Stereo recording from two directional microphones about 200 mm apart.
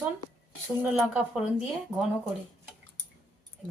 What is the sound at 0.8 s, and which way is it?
Speech, 5° right (ahead or behind).